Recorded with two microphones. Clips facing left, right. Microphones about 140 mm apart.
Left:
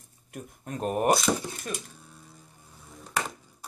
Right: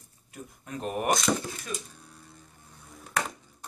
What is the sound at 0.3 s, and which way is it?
Speech, 45° left (ahead or behind).